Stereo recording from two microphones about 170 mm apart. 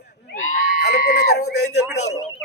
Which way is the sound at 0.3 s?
45° left (ahead or behind).